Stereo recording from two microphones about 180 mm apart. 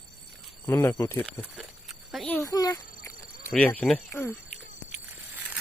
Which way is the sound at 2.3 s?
15° left (ahead or behind).